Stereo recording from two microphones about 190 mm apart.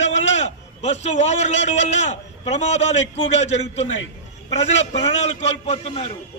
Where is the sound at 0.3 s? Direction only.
35° left (ahead or behind).